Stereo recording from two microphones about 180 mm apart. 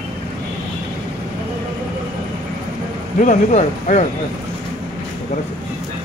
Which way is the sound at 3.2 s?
40° left (ahead or behind).